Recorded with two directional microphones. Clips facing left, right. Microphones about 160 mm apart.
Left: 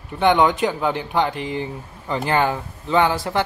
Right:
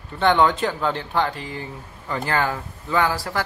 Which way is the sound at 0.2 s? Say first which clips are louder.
Left 2 dB; 15° left (ahead or behind).